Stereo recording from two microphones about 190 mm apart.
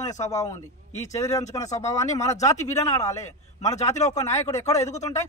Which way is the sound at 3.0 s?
15° left (ahead or behind).